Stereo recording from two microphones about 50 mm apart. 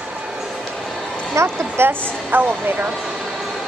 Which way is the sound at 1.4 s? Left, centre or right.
Right.